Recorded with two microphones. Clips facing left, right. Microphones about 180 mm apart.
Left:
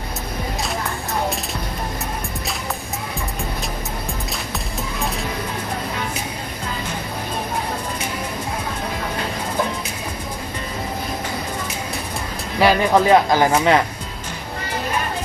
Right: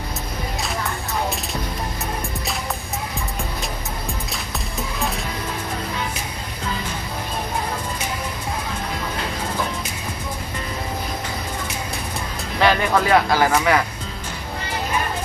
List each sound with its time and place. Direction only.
12.5 s music: 10° left (ahead or behind)
13.1 s speech: 25° left (ahead or behind)